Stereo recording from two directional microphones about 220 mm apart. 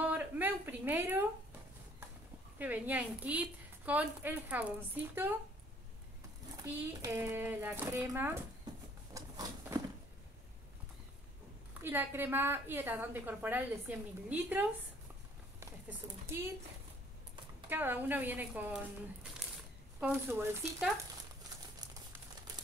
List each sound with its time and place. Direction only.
0.0 s a sound: 10° right (ahead or behind)
2.6 s a woman's voice: 10° right (ahead or behind)
6.6 s a woman's voice: 10° right (ahead or behind)
9.1 s a sound: 15° right (ahead or behind)
11.8 s a woman's voice: 10° right (ahead or behind)
17.6 s a woman's voice: 10° right (ahead or behind)
20.0 s a woman's voice: 10° right (ahead or behind)